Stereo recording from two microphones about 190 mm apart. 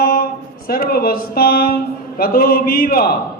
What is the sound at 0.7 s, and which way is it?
Speech, 50° left (ahead or behind).